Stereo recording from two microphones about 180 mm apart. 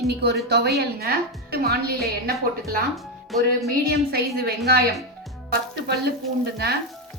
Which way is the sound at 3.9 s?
60° right (ahead or behind).